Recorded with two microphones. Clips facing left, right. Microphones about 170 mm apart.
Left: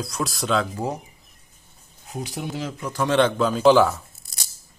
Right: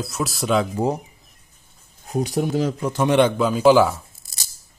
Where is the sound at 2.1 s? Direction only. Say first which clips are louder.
Right 9 dB; 45° right (ahead or behind).